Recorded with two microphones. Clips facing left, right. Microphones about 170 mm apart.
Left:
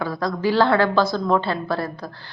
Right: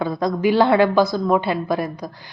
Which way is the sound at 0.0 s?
20° right (ahead or behind).